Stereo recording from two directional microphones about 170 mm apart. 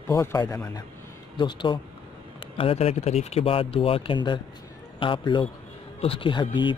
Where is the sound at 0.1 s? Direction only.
20° left (ahead or behind).